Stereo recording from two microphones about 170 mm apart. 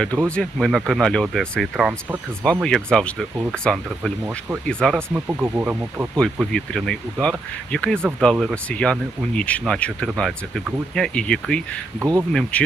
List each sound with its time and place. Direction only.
0.3 s speech: 5° left (ahead or behind)
4.9 s speech: 10° right (ahead or behind)
6.1 s speech: 5° left (ahead or behind)
11.9 s speech: 15° right (ahead or behind)
12.3 s speech: 5° left (ahead or behind)